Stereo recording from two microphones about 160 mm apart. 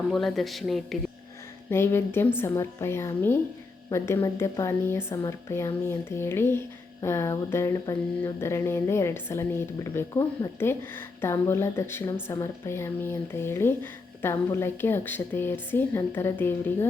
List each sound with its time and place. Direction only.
0.1 s speech: centre (ahead or behind)
1.7 s a woman's voice: 15° left (ahead or behind)